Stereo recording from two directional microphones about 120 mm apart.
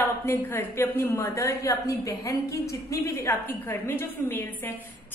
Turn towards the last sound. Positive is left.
turn(degrees=20)  # may be behind; listen again after turning